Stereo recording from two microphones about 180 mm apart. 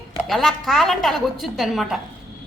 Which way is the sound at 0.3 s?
Centre (ahead or behind).